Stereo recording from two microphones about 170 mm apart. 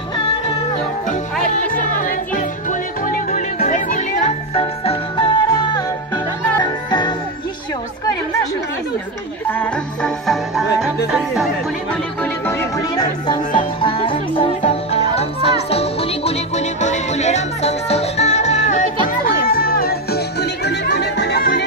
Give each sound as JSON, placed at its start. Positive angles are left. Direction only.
{"t": 1.5, "sound": "music", "side_deg": 50}
{"t": 4.6, "sound": "music", "side_deg": 30}
{"t": 9.5, "sound": "music", "side_deg": 5}
{"t": 11.1, "sound": "speech", "side_deg": 0}
{"t": 11.9, "sound": "music", "side_deg": 10}
{"t": 13.7, "sound": "music", "side_deg": 30}